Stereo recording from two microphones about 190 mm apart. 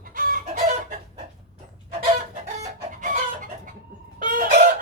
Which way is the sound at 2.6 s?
45° right (ahead or behind).